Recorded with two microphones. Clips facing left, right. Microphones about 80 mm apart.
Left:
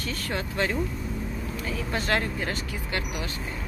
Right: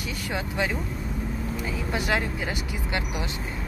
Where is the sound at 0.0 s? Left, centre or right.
Centre.